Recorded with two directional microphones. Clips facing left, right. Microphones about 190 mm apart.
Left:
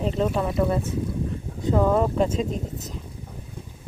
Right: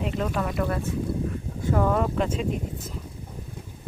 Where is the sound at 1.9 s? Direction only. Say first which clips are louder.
Left 3 dB; 35° left (ahead or behind).